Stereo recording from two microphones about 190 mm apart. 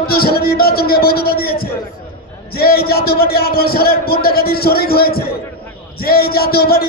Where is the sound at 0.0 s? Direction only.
55° left (ahead or behind).